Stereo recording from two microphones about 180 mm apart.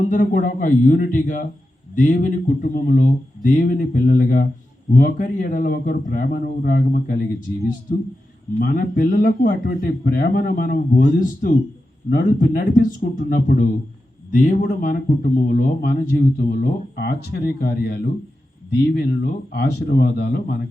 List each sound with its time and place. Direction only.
0.0 s speech: 45° left (ahead or behind)